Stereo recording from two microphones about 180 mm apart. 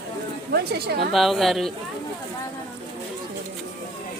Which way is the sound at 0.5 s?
60° right (ahead or behind).